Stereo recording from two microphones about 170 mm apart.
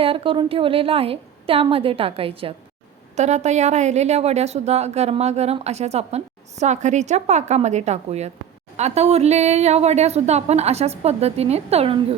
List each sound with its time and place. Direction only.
0.0 s a woman's voice: 30° right (ahead or behind)